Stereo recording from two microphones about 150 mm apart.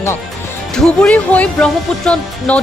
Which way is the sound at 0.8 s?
5° left (ahead or behind).